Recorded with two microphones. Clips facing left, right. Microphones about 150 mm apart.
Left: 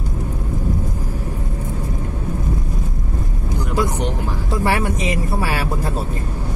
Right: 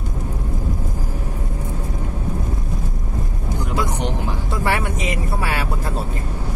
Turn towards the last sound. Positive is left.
turn(degrees=25)  # may be behind; listen again after turning